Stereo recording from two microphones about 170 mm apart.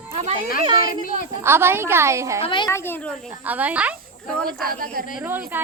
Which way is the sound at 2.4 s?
30° left (ahead or behind).